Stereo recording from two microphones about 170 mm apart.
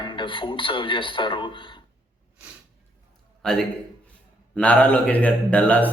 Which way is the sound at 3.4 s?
5° left (ahead or behind).